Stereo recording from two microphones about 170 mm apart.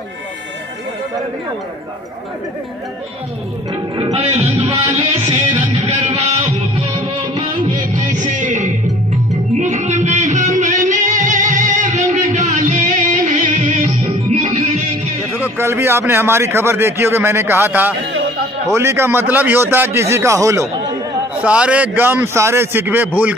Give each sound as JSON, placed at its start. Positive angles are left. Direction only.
{"t": 4.1, "sound": "music", "side_deg": -35}
{"t": 4.6, "sound": "music", "side_deg": -20}
{"t": 5.8, "sound": "music", "side_deg": -40}
{"t": 7.8, "sound": "music", "side_deg": -50}
{"t": 15.3, "sound": "a man's voice", "side_deg": -10}
{"t": 21.4, "sound": "a man's voice", "side_deg": -5}